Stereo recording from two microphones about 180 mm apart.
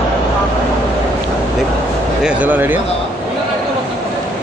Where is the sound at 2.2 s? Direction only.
5° right (ahead or behind).